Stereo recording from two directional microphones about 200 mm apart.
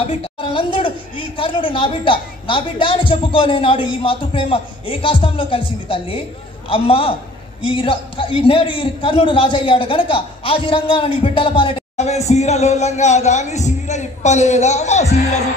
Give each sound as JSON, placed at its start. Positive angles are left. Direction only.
{"t": 0.0, "sound": "a woman's voice", "side_deg": 25}